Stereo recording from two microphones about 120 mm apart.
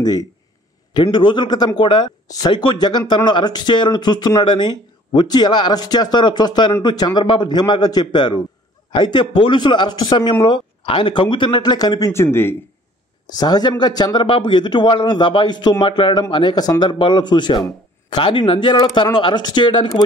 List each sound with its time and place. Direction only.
0.0 s a man's voice: 35° left (ahead or behind)
12.1 s speech: 20° left (ahead or behind)
13.4 s a man's voice: 35° left (ahead or behind)